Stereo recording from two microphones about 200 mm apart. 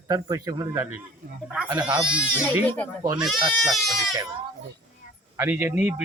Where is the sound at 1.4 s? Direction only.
5° right (ahead or behind).